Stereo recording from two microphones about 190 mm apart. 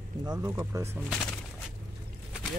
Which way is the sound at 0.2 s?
15° right (ahead or behind).